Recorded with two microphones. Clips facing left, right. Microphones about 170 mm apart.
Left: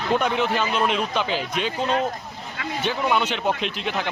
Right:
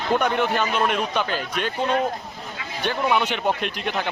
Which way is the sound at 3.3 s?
55° right (ahead or behind).